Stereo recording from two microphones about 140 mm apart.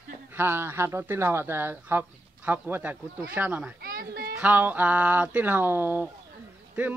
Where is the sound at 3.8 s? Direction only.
90° right.